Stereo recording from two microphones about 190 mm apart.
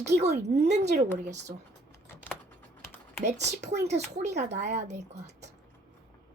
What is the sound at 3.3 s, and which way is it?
Speech, 65° right (ahead or behind).